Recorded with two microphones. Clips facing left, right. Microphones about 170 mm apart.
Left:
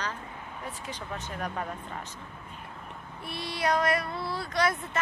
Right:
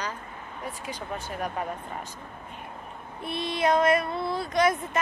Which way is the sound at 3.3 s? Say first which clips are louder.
Right 4 dB; 20° right (ahead or behind).